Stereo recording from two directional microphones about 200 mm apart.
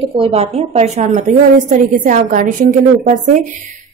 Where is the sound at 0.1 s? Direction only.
30° right (ahead or behind).